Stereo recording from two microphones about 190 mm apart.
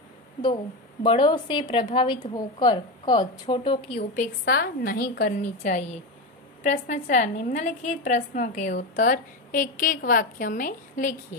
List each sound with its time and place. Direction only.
1.0 s a woman's voice: 25° left (ahead or behind)
4.1 s a woman's voice: 45° left (ahead or behind)